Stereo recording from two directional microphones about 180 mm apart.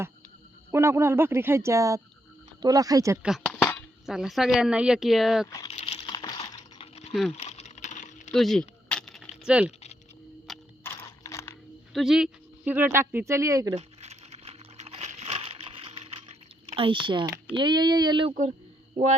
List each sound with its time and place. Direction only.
0.7 s speech: 15° right (ahead or behind)
3.2 s a sound: centre (ahead or behind)
4.0 s speech: centre (ahead or behind)
5.6 s a sound: 35° left (ahead or behind)
7.1 s speech: centre (ahead or behind)
7.3 s typing: 35° left (ahead or behind)
8.3 s keys jangling: centre (ahead or behind)
9.5 s speech: 5° right (ahead or behind)
10.5 s a sound: centre (ahead or behind)
10.8 s a sound: 15° left (ahead or behind)
11.9 s speech: centre (ahead or behind)
13.7 s crumpling: 35° right (ahead or behind)
16.6 s speech: 30° right (ahead or behind)